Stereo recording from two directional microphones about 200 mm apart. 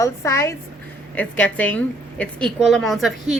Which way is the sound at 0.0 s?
15° left (ahead or behind).